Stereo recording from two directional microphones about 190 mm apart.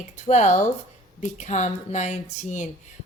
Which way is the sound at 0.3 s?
40° left (ahead or behind).